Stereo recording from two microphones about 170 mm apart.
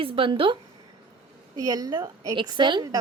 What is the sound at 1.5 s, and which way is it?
Speech, 20° right (ahead or behind).